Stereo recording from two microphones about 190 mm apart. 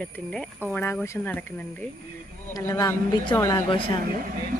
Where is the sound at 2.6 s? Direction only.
20° left (ahead or behind).